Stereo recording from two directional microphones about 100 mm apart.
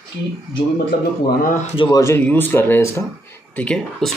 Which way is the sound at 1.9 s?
30° left (ahead or behind).